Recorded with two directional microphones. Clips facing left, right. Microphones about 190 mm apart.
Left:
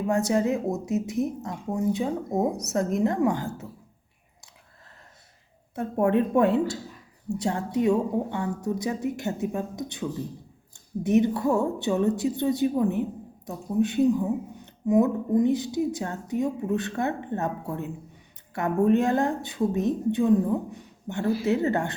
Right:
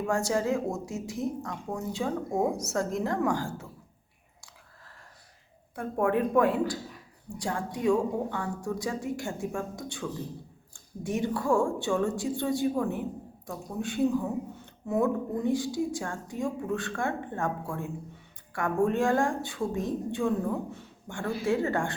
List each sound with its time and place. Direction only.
0.1 s speech: 20° left (ahead or behind)
5.7 s speech: 25° left (ahead or behind)